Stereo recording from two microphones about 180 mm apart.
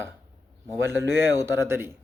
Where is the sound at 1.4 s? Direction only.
15° right (ahead or behind).